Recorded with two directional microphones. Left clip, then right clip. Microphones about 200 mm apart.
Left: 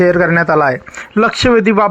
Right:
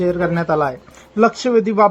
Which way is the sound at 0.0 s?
15° left (ahead or behind).